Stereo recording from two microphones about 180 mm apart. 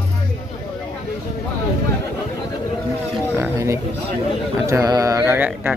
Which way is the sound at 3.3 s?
15° right (ahead or behind).